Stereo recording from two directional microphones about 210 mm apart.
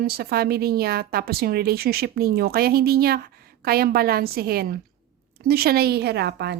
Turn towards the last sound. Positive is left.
turn(degrees=-50)  # may be behind; listen again after turning